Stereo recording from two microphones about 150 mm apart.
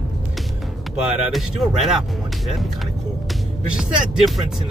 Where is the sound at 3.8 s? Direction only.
Centre (ahead or behind).